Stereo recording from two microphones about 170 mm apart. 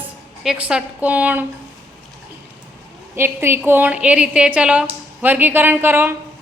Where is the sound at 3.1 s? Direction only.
15° right (ahead or behind).